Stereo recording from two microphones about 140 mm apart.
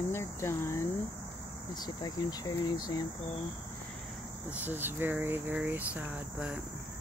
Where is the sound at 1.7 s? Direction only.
30° left (ahead or behind).